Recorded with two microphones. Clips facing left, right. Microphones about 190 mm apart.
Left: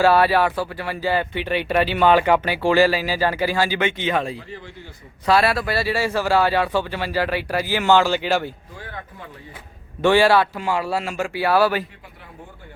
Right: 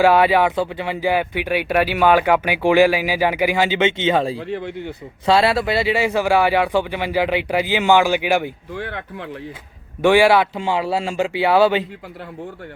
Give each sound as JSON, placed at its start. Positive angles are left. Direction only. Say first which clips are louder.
{"t": 0.0, "sound": "speech", "louder": "right 2 dB", "side_deg": -15}
{"t": 4.4, "sound": "speech", "louder": "right 10 dB", "side_deg": -70}
{"t": 5.2, "sound": "speech", "louder": "right 2 dB", "side_deg": -25}
{"t": 8.7, "sound": "speech", "louder": "right 8 dB", "side_deg": -75}
{"t": 10.0, "sound": "speech", "louder": "right 2 dB", "side_deg": -15}